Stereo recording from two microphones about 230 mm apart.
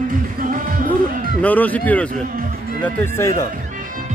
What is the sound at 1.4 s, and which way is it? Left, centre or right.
Speech, centre.